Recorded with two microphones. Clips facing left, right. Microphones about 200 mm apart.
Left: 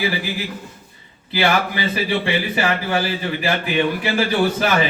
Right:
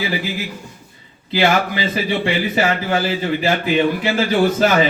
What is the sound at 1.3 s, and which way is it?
A man's voice, 15° right (ahead or behind).